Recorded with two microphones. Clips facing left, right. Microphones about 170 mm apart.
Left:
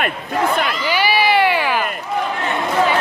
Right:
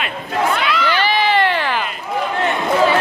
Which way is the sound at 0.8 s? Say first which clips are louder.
Left 1 dB; 10° left (ahead or behind).